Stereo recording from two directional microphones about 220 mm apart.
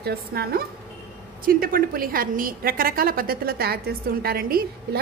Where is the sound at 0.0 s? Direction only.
45° right (ahead or behind).